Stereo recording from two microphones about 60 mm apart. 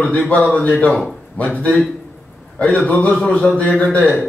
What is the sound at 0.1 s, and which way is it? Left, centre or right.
A man's voice, left.